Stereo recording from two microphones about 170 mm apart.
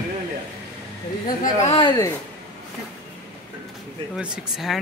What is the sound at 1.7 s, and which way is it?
Speech, 30° left (ahead or behind).